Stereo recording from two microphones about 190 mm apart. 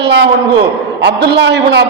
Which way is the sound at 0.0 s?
65° right (ahead or behind).